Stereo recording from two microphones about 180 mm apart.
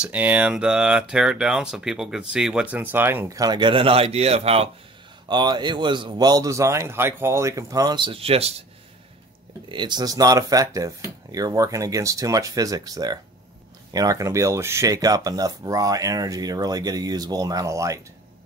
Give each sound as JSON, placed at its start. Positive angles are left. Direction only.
{"t": 0.0, "sound": "speech", "side_deg": -10}
{"t": 9.7, "sound": "speech", "side_deg": -25}